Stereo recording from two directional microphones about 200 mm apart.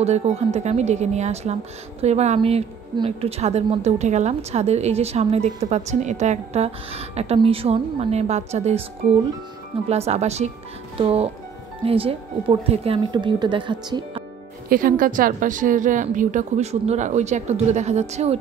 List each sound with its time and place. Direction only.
0.0 s a woman's voice: 30° right (ahead or behind)
9.8 s a woman's voice: 30° right (ahead or behind)
14.7 s a woman's voice: 45° right (ahead or behind)